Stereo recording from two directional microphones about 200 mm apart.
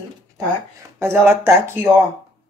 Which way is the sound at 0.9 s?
10° right (ahead or behind).